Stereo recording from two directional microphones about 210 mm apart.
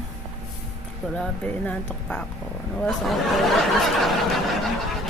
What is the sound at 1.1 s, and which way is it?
Speech, 5° left (ahead or behind).